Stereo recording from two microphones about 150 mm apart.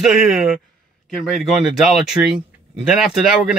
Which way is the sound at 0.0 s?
5° right (ahead or behind).